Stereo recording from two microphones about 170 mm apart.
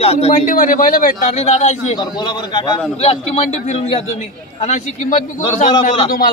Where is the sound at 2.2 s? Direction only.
25° left (ahead or behind); by 5.7 s 45° left (ahead or behind).